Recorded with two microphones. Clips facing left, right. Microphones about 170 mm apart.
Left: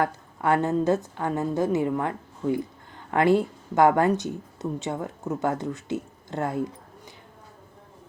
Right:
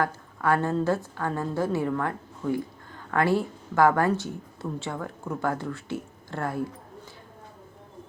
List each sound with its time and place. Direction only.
0.0 s a woman's voice: 20° left (ahead or behind)